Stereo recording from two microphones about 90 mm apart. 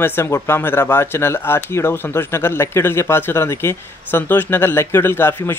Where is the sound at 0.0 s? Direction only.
25° left (ahead or behind).